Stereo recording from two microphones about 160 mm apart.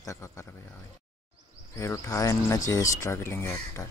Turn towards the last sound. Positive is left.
turn(degrees=15)  # may be behind; listen again after turning